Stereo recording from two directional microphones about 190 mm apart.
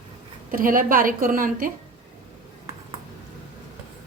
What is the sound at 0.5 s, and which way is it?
A woman's voice, 45° right (ahead or behind).